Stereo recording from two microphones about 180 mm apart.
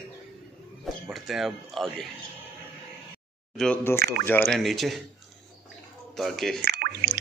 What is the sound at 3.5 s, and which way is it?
Speech, 5° left (ahead or behind).